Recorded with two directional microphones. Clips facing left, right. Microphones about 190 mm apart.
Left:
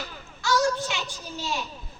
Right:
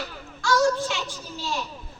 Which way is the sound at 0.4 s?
Centre (ahead or behind).